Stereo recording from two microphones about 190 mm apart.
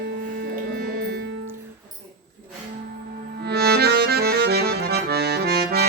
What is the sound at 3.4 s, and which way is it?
Accordion, 55° right (ahead or behind).